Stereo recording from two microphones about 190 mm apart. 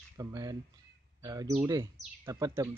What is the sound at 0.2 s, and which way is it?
Speech, 20° right (ahead or behind).